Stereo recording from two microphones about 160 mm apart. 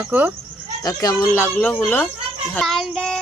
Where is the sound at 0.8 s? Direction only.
20° left (ahead or behind).